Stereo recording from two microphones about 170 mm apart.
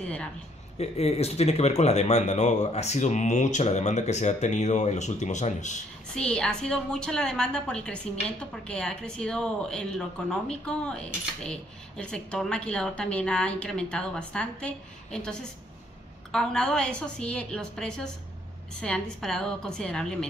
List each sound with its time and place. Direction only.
0.0 s a sound: 5° left (ahead or behind)
0.7 s speech: 35° left (ahead or behind)
6.1 s a woman's voice: 5° left (ahead or behind)